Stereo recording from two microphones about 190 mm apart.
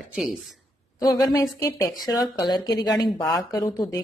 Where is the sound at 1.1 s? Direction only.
15° left (ahead or behind).